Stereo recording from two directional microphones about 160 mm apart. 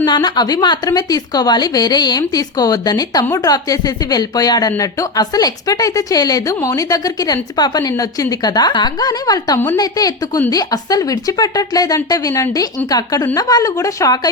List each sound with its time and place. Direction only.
0.0 s a woman's voice: 25° left (ahead or behind)